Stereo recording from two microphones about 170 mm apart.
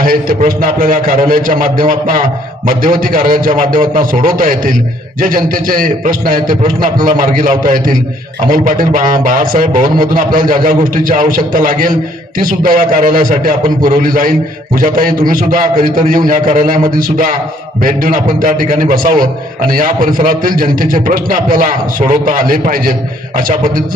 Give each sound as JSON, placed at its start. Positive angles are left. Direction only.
{"t": 0.0, "sound": "a man's voice", "side_deg": -55}